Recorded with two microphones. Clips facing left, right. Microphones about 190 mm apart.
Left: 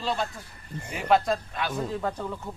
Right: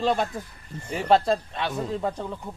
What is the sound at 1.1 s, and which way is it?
Speech, 30° right (ahead or behind).